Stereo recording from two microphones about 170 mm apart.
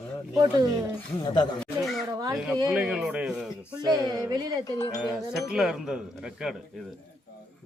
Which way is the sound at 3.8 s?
25° right (ahead or behind).